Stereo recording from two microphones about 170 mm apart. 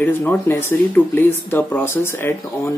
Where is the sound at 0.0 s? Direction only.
10° left (ahead or behind).